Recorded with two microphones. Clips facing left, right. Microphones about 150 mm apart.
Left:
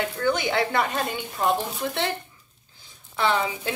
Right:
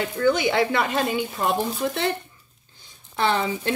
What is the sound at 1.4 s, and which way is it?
Speech, centre (ahead or behind).